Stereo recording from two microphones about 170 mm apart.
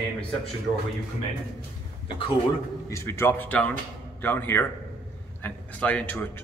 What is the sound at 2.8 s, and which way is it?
A man's voice, 15° left (ahead or behind).